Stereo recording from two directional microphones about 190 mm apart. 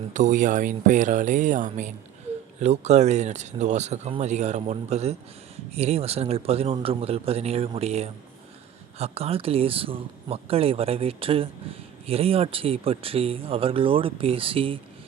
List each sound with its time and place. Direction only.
0.1 s speech: 40° right (ahead or behind)